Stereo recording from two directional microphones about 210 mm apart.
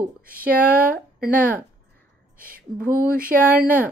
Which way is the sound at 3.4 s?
10° right (ahead or behind).